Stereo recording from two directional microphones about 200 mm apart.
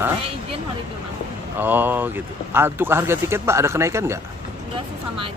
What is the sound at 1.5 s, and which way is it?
Speech, 10° right (ahead or behind).